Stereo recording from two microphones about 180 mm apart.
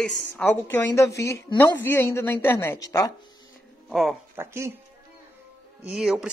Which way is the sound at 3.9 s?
Centre (ahead or behind).